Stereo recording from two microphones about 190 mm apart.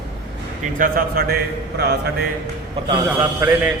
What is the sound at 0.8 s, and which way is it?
Speech, 50° right (ahead or behind).